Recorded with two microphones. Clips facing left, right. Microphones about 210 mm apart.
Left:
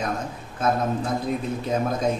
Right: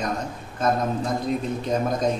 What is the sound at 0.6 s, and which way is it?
Speech, 5° left (ahead or behind).